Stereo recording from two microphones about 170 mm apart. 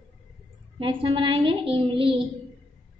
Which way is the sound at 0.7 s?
30° right (ahead or behind).